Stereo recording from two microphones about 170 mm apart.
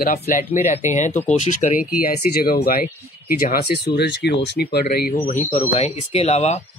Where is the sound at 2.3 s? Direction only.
65° left (ahead or behind).